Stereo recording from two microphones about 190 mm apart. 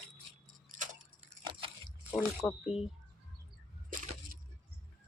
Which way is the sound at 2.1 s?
5° right (ahead or behind).